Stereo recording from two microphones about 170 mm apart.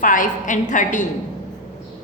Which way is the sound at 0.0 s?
50° left (ahead or behind).